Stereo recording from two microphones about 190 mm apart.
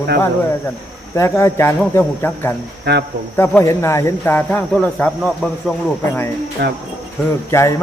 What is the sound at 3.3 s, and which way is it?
Speech, 10° left (ahead or behind).